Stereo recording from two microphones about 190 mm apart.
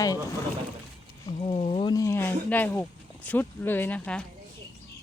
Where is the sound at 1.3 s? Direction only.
30° left (ahead or behind); by 4.2 s 5° left (ahead or behind).